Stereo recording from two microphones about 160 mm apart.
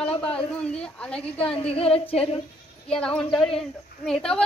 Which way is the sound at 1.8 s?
40° left (ahead or behind).